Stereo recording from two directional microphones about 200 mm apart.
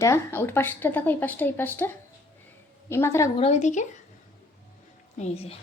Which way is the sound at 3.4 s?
35° left (ahead or behind).